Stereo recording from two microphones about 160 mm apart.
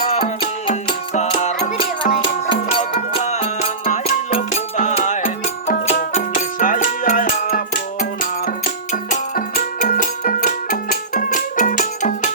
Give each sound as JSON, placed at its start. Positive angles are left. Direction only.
{"t": 0.7, "sound": "music", "side_deg": 45}
{"t": 8.9, "sound": "music", "side_deg": 55}